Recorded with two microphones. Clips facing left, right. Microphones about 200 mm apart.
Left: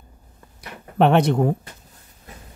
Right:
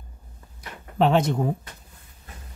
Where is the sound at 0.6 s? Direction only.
65° left (ahead or behind).